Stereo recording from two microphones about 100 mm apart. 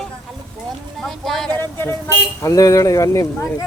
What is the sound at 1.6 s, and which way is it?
Speech, 20° left (ahead or behind).